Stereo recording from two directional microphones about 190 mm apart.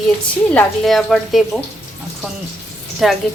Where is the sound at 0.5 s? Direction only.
Centre (ahead or behind).